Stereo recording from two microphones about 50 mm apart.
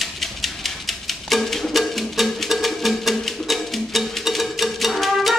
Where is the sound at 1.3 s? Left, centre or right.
Centre.